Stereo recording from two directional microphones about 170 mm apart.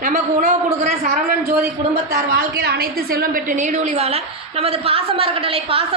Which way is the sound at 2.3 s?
75° right (ahead or behind).